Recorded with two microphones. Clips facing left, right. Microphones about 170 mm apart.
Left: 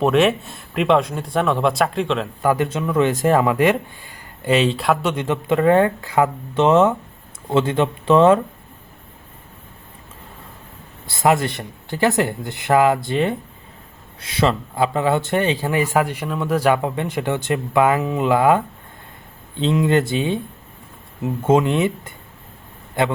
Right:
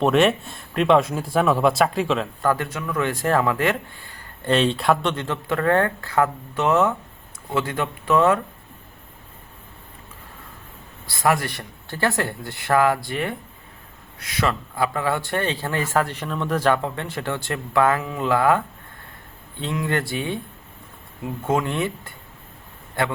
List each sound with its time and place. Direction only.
0.0 s speech: centre (ahead or behind)
2.4 s speech: 15° left (ahead or behind); by 5.1 s centre (ahead or behind)
5.1 s speech: 15° left (ahead or behind)
11.0 s speech: 25° left (ahead or behind)